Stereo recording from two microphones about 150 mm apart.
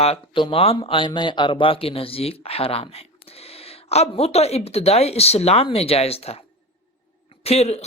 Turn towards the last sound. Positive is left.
turn(degrees=45)  # may be behind; listen again after turning